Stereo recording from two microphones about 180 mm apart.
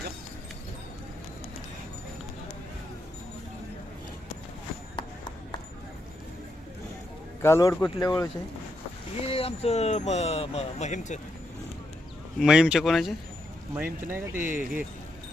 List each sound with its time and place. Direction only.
4.9 s a sound: 25° left (ahead or behind)
7.4 s a man's voice: 15° left (ahead or behind)
9.2 s speech: 30° left (ahead or behind)
12.4 s speech: 5° right (ahead or behind)